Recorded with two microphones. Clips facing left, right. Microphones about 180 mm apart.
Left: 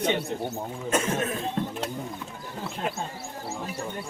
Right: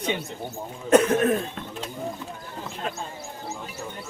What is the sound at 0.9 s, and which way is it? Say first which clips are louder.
Speech: right 9 dB; 65° right (ahead or behind).